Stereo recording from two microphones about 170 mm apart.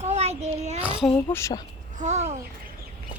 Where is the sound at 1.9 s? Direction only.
45° right (ahead or behind).